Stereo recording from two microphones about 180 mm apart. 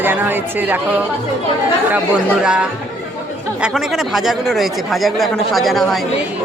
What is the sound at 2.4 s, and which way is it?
Speech, 5° right (ahead or behind).